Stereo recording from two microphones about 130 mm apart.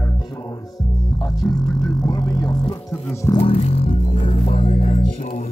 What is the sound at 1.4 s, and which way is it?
Music, 30° left (ahead or behind).